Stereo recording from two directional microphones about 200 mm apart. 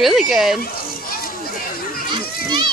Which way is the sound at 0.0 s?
Centre (ahead or behind).